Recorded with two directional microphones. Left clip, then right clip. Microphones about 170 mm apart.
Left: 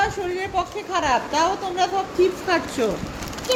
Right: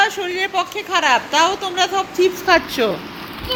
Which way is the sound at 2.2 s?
25° right (ahead or behind).